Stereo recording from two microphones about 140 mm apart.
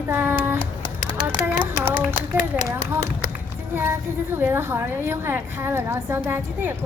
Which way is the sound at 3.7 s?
15° right (ahead or behind).